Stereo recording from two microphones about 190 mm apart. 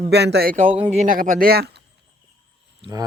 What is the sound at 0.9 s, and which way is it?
Speech, 40° right (ahead or behind).